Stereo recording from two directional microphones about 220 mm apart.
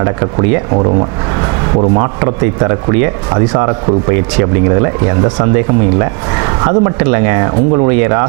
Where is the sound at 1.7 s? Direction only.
25° right (ahead or behind).